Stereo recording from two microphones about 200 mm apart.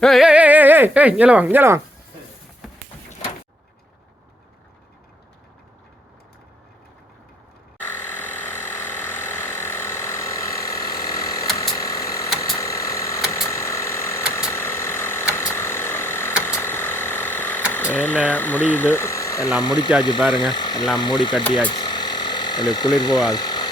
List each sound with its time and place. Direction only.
0.0 s speech: centre (ahead or behind)
7.9 s ratchet: 10° left (ahead or behind)
11.5 s a sound: 15° left (ahead or behind)
13.5 s ratchet: 15° left (ahead or behind)
16.4 s a sound: 10° left (ahead or behind)
18.3 s speech: 10° left (ahead or behind)
21.7 s engine: 20° left (ahead or behind)
23.0 s speech: 20° left (ahead or behind)